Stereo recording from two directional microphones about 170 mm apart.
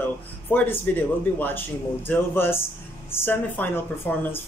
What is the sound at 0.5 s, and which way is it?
Speech, 10° left (ahead or behind).